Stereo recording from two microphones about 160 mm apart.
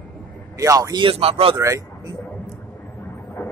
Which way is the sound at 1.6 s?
20° right (ahead or behind).